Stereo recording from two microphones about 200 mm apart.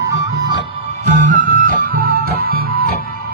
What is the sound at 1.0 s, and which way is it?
Music, 40° right (ahead or behind).